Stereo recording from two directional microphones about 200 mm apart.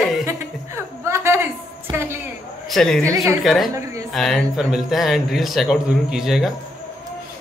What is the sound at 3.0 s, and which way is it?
Speech, 15° right (ahead or behind).